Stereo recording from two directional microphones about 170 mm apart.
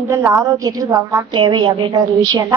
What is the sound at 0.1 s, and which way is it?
A woman's voice, 15° right (ahead or behind).